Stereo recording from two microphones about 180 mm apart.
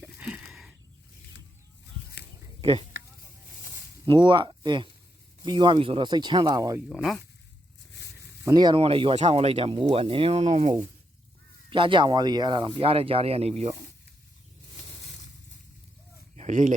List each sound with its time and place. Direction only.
0.0 s a sound: 5° right (ahead or behind)
2.6 s speech: 30° right (ahead or behind)
4.0 s speech: 25° right (ahead or behind)
6.9 s speech: centre (ahead or behind)
8.4 s speech: 20° right (ahead or behind); by 10.8 s 40° right (ahead or behind)
11.7 s speech: 30° right (ahead or behind)
16.3 s a sound: 40° right (ahead or behind)